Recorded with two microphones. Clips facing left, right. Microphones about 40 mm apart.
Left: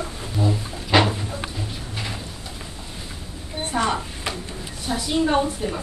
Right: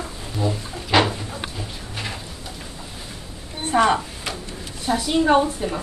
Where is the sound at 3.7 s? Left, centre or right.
Centre.